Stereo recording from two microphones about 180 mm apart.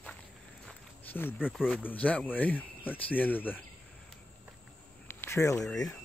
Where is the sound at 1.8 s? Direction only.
10° left (ahead or behind).